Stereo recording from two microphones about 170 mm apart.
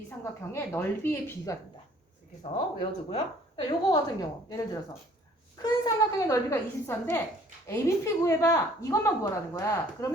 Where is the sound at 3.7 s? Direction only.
20° left (ahead or behind).